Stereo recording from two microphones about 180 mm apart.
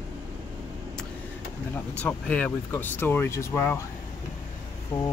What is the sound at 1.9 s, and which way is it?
Speech, 5° left (ahead or behind).